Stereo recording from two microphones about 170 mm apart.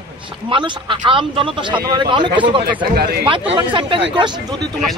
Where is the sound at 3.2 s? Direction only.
30° right (ahead or behind).